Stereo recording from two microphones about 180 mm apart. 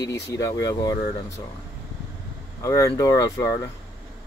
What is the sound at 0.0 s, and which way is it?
Speech, 20° left (ahead or behind).